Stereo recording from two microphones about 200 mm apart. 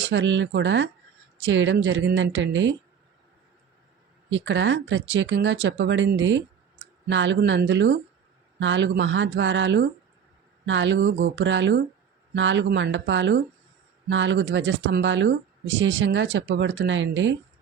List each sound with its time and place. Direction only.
0.0 s speech: 65° right (ahead or behind)
4.3 s speech: 70° right (ahead or behind)